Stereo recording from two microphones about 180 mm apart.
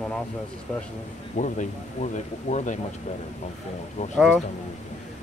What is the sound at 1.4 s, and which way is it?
Speech, 45° left (ahead or behind).